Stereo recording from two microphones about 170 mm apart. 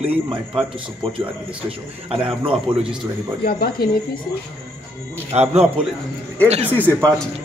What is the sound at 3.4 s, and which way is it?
Speech, 60° left (ahead or behind).